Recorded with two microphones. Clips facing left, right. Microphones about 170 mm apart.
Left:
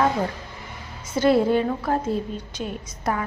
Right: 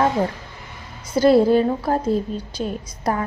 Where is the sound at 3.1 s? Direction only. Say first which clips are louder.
Right 3 dB; 35° right (ahead or behind).